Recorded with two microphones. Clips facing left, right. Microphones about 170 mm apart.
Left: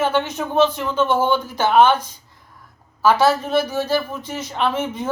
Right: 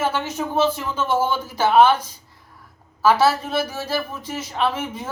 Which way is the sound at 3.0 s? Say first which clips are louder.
Left 1 dB; 5° right (ahead or behind).